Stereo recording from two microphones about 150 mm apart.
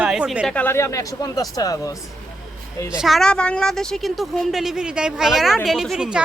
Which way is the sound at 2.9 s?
Centre (ahead or behind).